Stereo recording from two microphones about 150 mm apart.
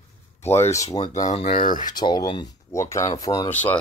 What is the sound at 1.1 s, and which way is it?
Speech, 50° left (ahead or behind).